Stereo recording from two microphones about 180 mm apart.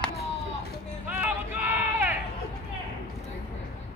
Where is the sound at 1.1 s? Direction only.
10° right (ahead or behind).